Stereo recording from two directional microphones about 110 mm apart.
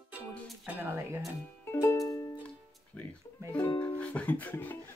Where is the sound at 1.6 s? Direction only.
20° left (ahead or behind).